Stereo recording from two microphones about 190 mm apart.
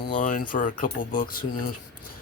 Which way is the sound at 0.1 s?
45° left (ahead or behind).